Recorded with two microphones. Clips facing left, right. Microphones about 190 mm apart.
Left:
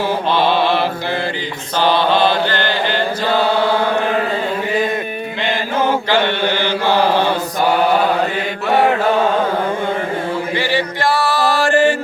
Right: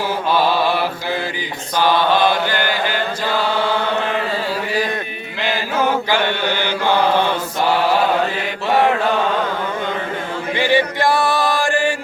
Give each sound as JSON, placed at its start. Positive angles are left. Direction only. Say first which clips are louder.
{"t": 0.3, "sound": "mantra", "louder": "left 1 dB", "side_deg": -10}
{"t": 10.5, "sound": "chant", "louder": "right 2 dB", "side_deg": -15}